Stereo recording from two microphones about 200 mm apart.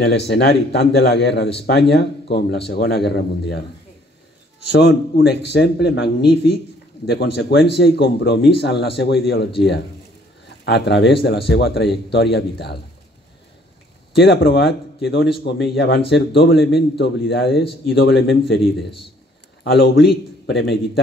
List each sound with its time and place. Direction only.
0.0 s a man's voice: 60° left (ahead or behind)
4.6 s a man's voice: 55° left (ahead or behind)
14.1 s a man's voice: 55° left (ahead or behind)
19.6 s a man's voice: 55° left (ahead or behind)